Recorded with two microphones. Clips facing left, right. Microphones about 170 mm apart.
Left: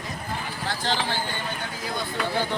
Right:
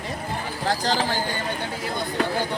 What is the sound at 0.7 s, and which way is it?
Speech, 40° right (ahead or behind).